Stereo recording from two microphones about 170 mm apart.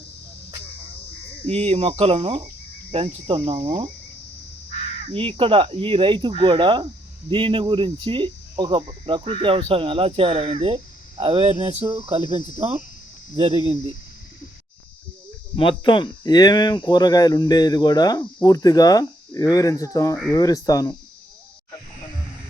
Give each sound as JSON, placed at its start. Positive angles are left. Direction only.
{"t": 1.5, "sound": "cricket", "side_deg": -35}
{"t": 5.0, "sound": "cricket", "side_deg": -35}
{"t": 11.9, "sound": "speech", "side_deg": -20}
{"t": 15.5, "sound": "speech", "side_deg": 30}